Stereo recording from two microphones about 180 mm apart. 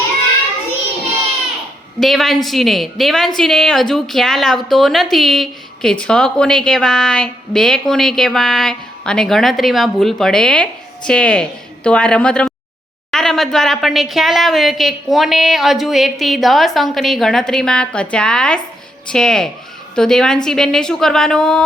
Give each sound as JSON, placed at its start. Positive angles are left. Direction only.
{"t": 2.0, "sound": "a woman's voice", "side_deg": 0}